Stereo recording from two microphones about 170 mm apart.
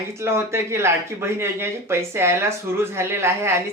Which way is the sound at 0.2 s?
15° right (ahead or behind).